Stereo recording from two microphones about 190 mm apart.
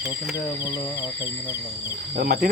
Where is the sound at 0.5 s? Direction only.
20° left (ahead or behind).